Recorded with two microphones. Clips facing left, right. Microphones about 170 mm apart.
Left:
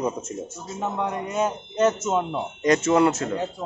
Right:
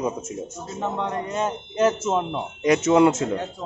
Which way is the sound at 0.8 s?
5° left (ahead or behind).